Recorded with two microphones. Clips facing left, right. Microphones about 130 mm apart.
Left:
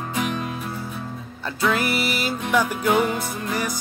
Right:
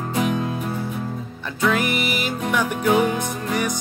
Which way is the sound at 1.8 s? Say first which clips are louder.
Even; 15° right (ahead or behind).